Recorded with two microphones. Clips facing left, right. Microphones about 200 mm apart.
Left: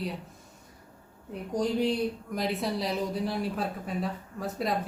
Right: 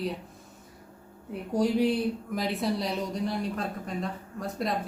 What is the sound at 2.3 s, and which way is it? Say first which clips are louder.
Speech: right 1 dB; centre (ahead or behind).